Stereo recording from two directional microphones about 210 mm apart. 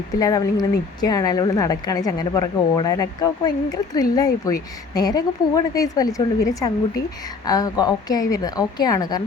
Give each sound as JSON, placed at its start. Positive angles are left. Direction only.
{"t": 0.2, "sound": "speech", "side_deg": 15}